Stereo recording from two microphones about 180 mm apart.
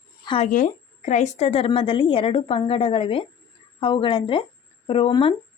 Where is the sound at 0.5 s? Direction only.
40° left (ahead or behind).